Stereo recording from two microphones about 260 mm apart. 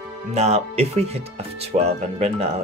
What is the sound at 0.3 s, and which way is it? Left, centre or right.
Speech, right.